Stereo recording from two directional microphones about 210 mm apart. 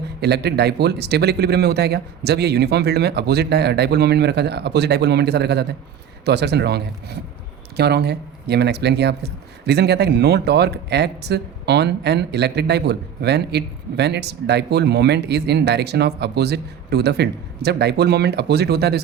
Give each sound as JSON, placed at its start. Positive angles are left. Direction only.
{"t": 0.2, "sound": "speech", "side_deg": -50}